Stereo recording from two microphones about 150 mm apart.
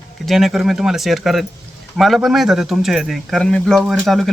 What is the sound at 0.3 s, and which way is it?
Speech, centre (ahead or behind).